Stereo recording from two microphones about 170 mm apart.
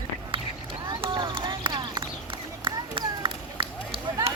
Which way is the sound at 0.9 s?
30° right (ahead or behind).